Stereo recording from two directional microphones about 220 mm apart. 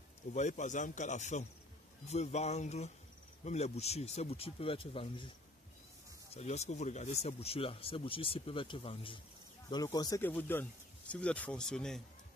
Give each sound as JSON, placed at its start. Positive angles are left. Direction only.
{"t": 0.3, "sound": "speech", "side_deg": 35}
{"t": 6.3, "sound": "speech", "side_deg": 30}